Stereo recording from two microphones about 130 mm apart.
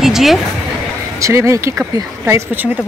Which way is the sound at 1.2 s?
25° right (ahead or behind).